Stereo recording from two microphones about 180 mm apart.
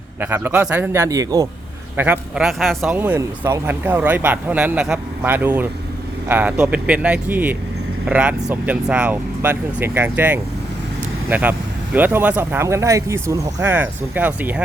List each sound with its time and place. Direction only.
0.2 s speech: 10° right (ahead or behind)
2.0 s speech: 5° right (ahead or behind)